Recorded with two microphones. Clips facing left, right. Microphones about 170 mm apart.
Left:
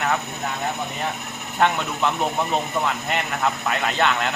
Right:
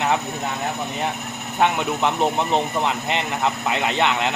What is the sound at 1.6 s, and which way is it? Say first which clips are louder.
Speech: right 1 dB; 15° right (ahead or behind).